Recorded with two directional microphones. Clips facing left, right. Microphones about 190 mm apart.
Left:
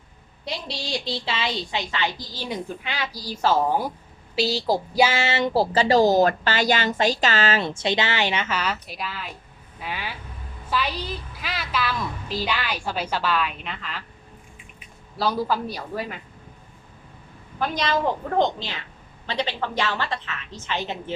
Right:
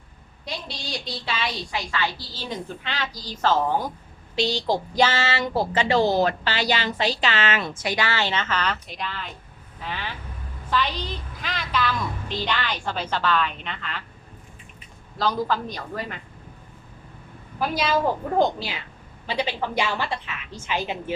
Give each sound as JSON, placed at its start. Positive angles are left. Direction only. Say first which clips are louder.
{"t": 0.4, "sound": "a woman's voice", "louder": "left 3 dB", "side_deg": 25}
{"t": 5.5, "sound": "a woman's voice", "louder": "left 3 dB", "side_deg": 35}
{"t": 15.2, "sound": "a woman's voice", "louder": "left 1 dB", "side_deg": 10}
{"t": 17.6, "sound": "a woman's voice", "louder": "right 1 dB", "side_deg": -5}